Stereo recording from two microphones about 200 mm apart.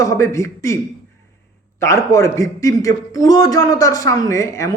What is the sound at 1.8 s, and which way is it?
A man's voice, 15° left (ahead or behind).